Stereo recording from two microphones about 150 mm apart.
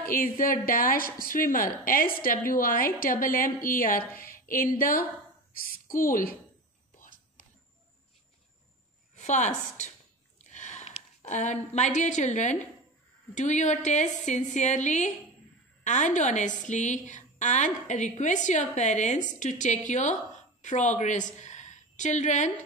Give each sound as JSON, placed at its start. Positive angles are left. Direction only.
{"t": 0.1, "sound": "a woman's voice", "side_deg": 70}
{"t": 7.0, "sound": "whispering", "side_deg": 60}
{"t": 9.1, "sound": "a woman's voice", "side_deg": 50}
{"t": 10.4, "sound": "a sound", "side_deg": 50}
{"t": 13.3, "sound": "a woman's voice", "side_deg": 50}